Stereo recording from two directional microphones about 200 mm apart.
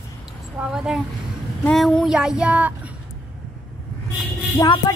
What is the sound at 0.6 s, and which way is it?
Child singing, 5° right (ahead or behind).